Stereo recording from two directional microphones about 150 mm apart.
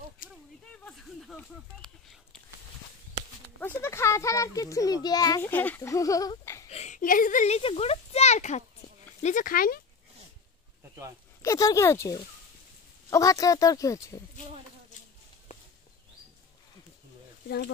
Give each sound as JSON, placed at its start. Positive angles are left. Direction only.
{"t": 0.8, "sound": "a sound", "side_deg": 5}
{"t": 3.6, "sound": "a child's voice", "side_deg": 15}
{"t": 5.4, "sound": "a child's voice", "side_deg": 10}
{"t": 6.7, "sound": "speech", "side_deg": 50}
{"t": 9.2, "sound": "speech", "side_deg": 60}
{"t": 11.4, "sound": "a child's voice", "side_deg": 20}